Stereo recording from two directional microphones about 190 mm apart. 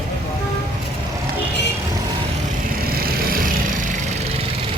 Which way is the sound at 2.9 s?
50° right (ahead or behind).